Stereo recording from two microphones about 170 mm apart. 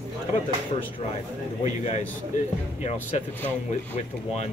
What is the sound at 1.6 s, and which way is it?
Speech, 40° left (ahead or behind).